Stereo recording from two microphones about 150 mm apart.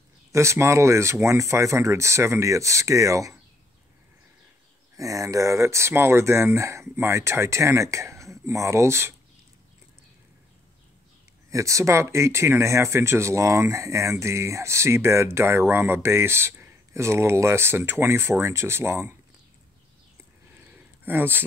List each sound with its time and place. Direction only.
0.3 s speech: 20° right (ahead or behind)
4.9 s speech: 20° right (ahead or behind)
11.5 s speech: 20° right (ahead or behind)
20.5 s a sound: 15° right (ahead or behind)